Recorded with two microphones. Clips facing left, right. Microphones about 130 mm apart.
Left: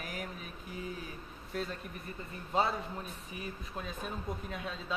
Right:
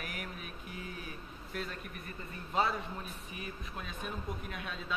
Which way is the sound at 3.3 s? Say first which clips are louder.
Left 3 dB; 30° left (ahead or behind).